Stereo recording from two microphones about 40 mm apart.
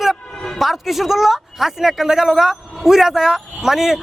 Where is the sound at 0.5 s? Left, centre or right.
Centre.